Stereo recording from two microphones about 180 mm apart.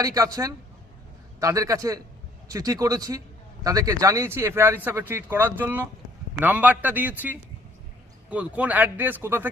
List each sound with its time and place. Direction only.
0.0 s a man's voice: 20° right (ahead or behind)